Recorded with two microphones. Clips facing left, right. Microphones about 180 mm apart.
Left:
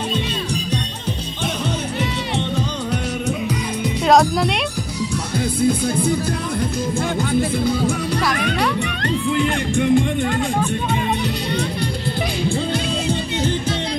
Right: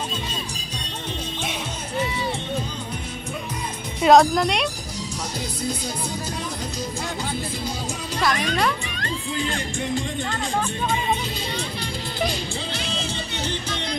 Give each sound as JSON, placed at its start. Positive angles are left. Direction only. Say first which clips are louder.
{"t": 4.0, "sound": "speech", "louder": "right 1 dB", "side_deg": 0}
{"t": 5.6, "sound": "music", "louder": "left 11 dB", "side_deg": 55}
{"t": 9.0, "sound": "music", "louder": "left 8 dB", "side_deg": 60}
{"t": 10.2, "sound": "speech", "louder": "left 6 dB", "side_deg": 15}
{"t": 12.4, "sound": "music", "louder": "left 9 dB", "side_deg": 55}